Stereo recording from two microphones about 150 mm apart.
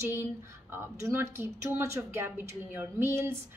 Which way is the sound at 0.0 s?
15° right (ahead or behind).